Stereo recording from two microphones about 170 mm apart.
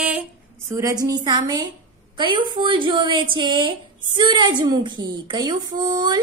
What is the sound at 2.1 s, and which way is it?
A woman's voice, 30° right (ahead or behind).